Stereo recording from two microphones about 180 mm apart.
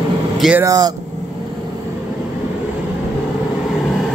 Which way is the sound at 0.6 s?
20° right (ahead or behind).